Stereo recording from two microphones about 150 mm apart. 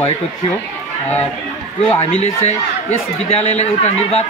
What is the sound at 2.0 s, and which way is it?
Speech, 45° left (ahead or behind).